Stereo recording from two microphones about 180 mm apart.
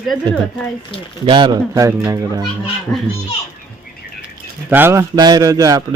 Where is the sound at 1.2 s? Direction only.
25° right (ahead or behind).